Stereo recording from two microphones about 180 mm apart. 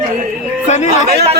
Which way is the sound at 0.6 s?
40° left (ahead or behind).